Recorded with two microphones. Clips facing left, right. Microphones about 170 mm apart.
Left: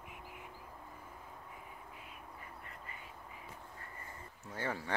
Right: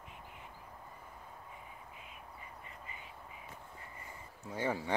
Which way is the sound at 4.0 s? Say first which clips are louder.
Right 1 dB; 15° right (ahead or behind).